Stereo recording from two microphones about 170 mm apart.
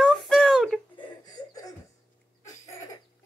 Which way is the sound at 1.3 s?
20° left (ahead or behind).